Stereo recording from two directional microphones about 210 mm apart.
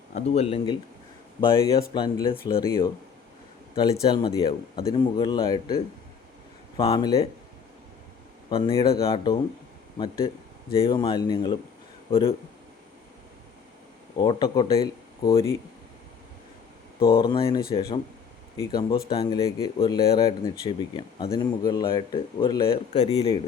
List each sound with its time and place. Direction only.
0.1 s speech: 30° left (ahead or behind)
8.4 s speech: 25° left (ahead or behind)
10.8 s speech: 25° left (ahead or behind)
14.2 s speech: 20° left (ahead or behind)
17.0 s speech: 45° left (ahead or behind)
17.2 s speech: 25° left (ahead or behind)
22.9 s speech: 30° left (ahead or behind)